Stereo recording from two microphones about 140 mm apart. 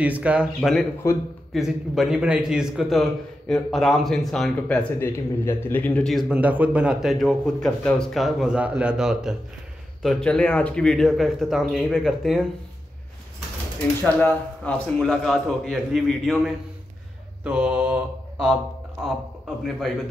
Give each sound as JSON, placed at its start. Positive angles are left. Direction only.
{"t": 0.0, "sound": "speech", "side_deg": -10}
{"t": 0.6, "sound": "a man's voice", "side_deg": 0}
{"t": 1.0, "sound": "a man's voice", "side_deg": 20}
{"t": 1.5, "sound": "a man's voice", "side_deg": 0}
{"t": 4.9, "sound": "speech", "side_deg": 20}
{"t": 6.1, "sound": "a man's voice", "side_deg": -5}
{"t": 10.0, "sound": "a man's voice", "side_deg": 5}
{"t": 14.0, "sound": "a man's voice", "side_deg": 10}
{"t": 17.4, "sound": "mantra", "side_deg": -5}